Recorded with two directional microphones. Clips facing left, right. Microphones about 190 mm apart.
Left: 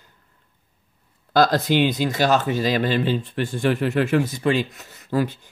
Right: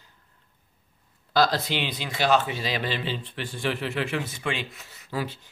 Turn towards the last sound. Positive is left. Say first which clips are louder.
# left 8 dB
turn(degrees=50)  # may be behind; listen again after turning